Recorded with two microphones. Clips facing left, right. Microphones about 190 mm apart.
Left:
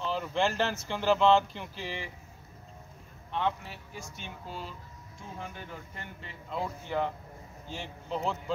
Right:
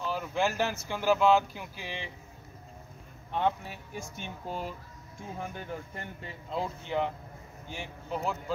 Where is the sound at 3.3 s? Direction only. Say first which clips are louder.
Right 2 dB; 45° right (ahead or behind).